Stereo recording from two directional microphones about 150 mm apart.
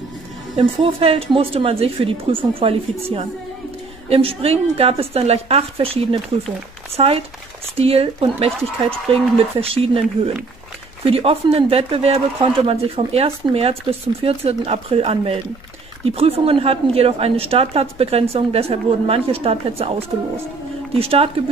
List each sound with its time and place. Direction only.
0.6 s speech: 40° right (ahead or behind)
4.1 s speech: 40° right (ahead or behind)